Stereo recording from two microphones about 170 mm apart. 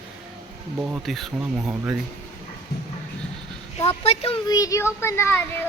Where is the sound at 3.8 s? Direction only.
35° left (ahead or behind).